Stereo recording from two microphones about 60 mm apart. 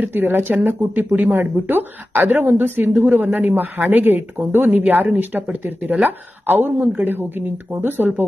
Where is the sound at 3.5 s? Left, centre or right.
Right.